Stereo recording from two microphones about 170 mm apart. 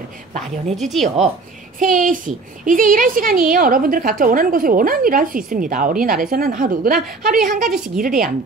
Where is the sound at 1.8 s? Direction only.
50° right (ahead or behind).